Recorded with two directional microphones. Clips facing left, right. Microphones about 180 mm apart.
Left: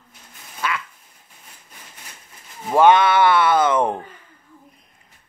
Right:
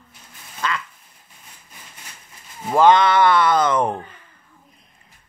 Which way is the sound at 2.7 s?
5° left (ahead or behind).